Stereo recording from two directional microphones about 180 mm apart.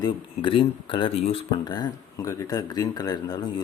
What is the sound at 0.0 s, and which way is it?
Speech, 30° left (ahead or behind).